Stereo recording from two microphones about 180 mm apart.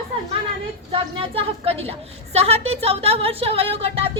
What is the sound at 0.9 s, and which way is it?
A woman's voice, 30° right (ahead or behind).